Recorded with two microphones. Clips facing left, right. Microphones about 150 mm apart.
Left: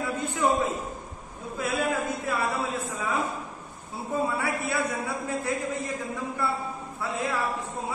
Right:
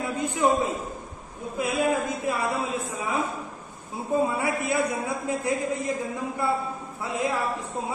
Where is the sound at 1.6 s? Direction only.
15° right (ahead or behind).